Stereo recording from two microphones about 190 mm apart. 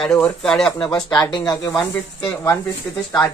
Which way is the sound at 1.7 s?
10° left (ahead or behind).